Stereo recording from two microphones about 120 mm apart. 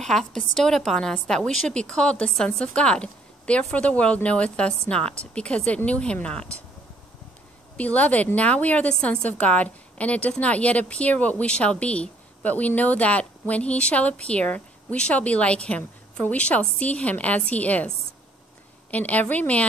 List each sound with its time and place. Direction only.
0.0 s a woman's voice: 5° left (ahead or behind)
7.7 s a woman's voice: 10° left (ahead or behind)